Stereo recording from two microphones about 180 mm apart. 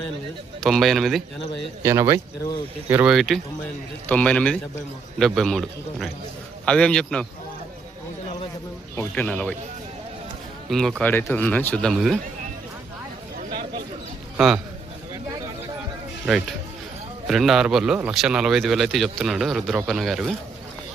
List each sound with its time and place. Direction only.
0.6 s a man's voice: centre (ahead or behind)
1.8 s speech: 15° right (ahead or behind)
2.9 s a man's voice: 5° right (ahead or behind)
9.0 s speech: 10° left (ahead or behind)
10.7 s a man's voice: centre (ahead or behind)
14.3 s a man's voice: 5° right (ahead or behind)
16.2 s a man's voice: centre (ahead or behind)